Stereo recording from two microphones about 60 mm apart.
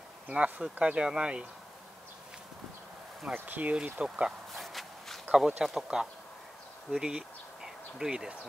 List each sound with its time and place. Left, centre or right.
0.3 s speech: centre
3.3 s speech: right
3.7 s speech: centre
4.6 s walk: centre
5.3 s speech: centre